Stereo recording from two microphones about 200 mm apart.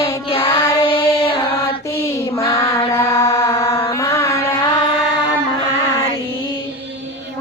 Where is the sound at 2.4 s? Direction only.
15° left (ahead or behind).